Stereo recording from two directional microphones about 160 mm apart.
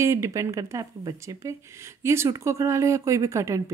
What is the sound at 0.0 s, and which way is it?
Speech, 15° right (ahead or behind).